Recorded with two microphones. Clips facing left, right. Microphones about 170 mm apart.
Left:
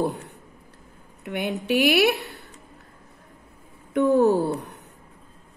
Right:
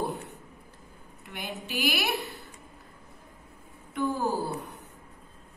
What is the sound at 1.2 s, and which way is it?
Speech, 60° left (ahead or behind).